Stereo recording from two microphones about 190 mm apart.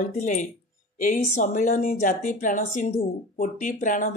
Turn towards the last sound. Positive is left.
turn(degrees=45)  # may be behind; listen again after turning